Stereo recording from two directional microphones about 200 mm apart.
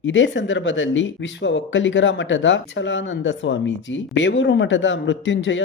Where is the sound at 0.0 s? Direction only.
65° left (ahead or behind).